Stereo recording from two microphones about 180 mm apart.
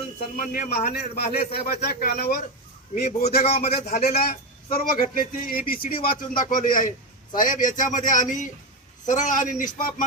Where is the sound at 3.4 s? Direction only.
35° left (ahead or behind).